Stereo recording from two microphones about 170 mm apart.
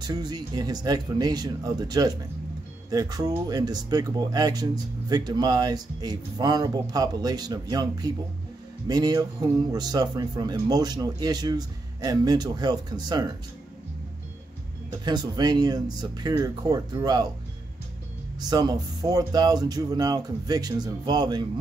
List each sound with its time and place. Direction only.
0.0 s speech: 25° right (ahead or behind)
14.9 s speech: 25° right (ahead or behind)
18.4 s speech: 25° right (ahead or behind)